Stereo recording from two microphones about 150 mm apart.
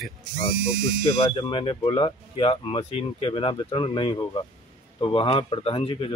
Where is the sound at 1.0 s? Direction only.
35° left (ahead or behind).